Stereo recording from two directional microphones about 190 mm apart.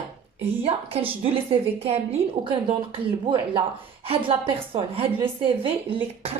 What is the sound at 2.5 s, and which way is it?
A woman's voice, 25° right (ahead or behind).